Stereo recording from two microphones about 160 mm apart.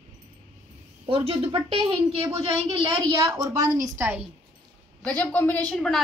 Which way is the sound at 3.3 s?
15° right (ahead or behind).